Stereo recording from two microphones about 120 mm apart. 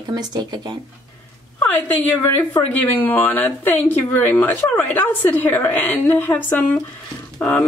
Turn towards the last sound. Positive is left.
turn(degrees=15)  # may be behind; listen again after turning